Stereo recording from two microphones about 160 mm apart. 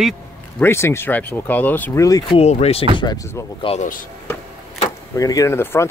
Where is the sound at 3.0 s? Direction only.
25° left (ahead or behind).